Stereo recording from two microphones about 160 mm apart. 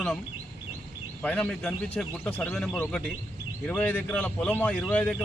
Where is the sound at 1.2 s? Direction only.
5° left (ahead or behind).